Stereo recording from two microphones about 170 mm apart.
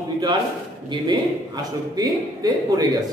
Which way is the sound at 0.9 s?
25° right (ahead or behind).